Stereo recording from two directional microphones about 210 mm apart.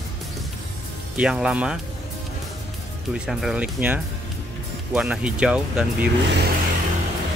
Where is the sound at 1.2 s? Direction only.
5° right (ahead or behind).